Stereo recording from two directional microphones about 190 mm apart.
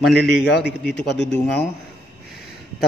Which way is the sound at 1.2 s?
65° left (ahead or behind).